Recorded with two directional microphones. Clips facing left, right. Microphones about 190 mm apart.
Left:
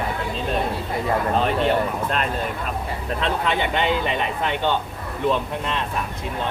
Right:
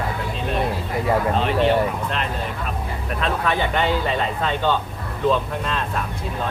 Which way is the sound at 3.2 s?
20° left (ahead or behind).